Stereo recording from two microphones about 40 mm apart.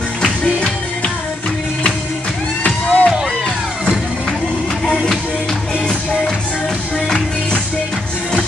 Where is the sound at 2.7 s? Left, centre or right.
Left.